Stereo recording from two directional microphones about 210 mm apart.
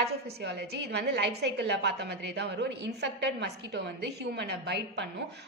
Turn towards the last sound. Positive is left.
turn(degrees=-55)  # may be behind; listen again after turning